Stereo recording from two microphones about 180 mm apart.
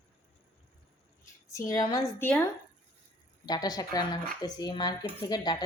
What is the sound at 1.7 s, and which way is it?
Speech, 20° left (ahead or behind).